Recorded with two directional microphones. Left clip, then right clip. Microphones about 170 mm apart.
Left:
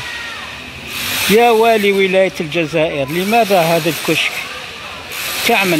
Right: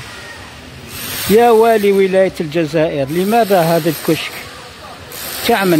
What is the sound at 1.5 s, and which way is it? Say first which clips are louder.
Speech: right 1 dB; 20° right (ahead or behind).